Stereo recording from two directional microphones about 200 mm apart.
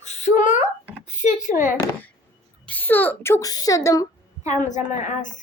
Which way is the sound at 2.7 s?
10° left (ahead or behind).